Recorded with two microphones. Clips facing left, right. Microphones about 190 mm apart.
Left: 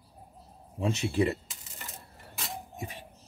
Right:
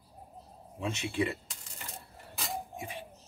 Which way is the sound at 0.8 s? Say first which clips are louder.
Left 5 dB; 35° left (ahead or behind).